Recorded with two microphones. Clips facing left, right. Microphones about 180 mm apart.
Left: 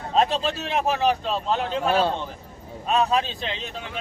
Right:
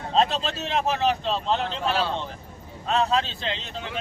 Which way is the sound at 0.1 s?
10° left (ahead or behind).